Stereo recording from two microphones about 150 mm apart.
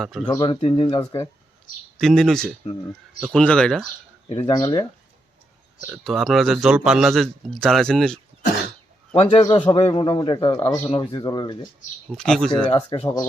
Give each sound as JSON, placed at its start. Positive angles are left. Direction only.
{"t": 0.0, "sound": "a man's voice", "side_deg": 0}
{"t": 0.3, "sound": "speech", "side_deg": 30}
{"t": 2.0, "sound": "a man's voice", "side_deg": 0}
{"t": 4.3, "sound": "speech", "side_deg": 25}
{"t": 5.9, "sound": "a man's voice", "side_deg": 0}
{"t": 9.1, "sound": "speech", "side_deg": 40}
{"t": 12.1, "sound": "a man's voice", "side_deg": 5}
{"t": 12.7, "sound": "speech", "side_deg": 40}